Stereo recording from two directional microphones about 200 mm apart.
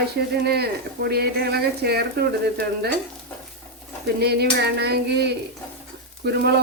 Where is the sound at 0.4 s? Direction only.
55° right (ahead or behind).